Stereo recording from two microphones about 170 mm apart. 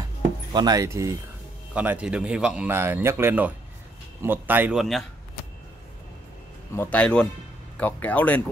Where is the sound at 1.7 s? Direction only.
5° right (ahead or behind).